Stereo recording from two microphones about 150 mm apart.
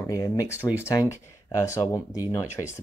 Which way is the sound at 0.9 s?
20° left (ahead or behind).